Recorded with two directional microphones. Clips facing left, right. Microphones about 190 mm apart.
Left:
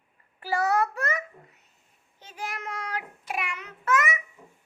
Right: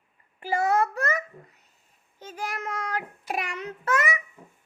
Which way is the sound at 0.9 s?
40° right (ahead or behind).